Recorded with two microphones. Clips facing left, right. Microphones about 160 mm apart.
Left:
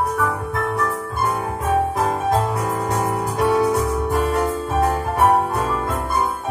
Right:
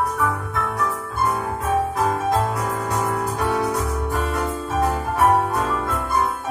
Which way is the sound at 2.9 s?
15° left (ahead or behind).